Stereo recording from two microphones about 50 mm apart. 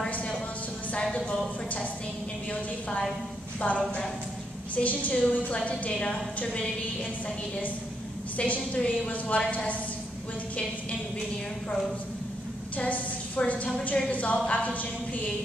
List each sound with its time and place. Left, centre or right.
3.6 s a woman's voice: left
8.4 s a woman's voice: left
12.7 s a woman's voice: left